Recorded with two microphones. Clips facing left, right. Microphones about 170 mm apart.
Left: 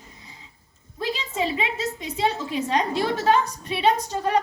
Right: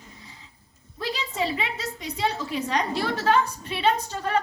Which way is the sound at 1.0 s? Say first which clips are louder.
Left 2 dB; 20° left (ahead or behind).